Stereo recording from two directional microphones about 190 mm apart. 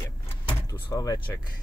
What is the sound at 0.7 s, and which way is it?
Speech, 20° left (ahead or behind).